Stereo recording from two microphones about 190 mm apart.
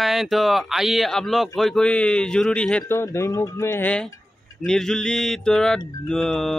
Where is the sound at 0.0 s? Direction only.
Centre (ahead or behind).